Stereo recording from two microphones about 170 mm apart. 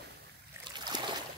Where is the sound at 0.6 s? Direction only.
25° right (ahead or behind).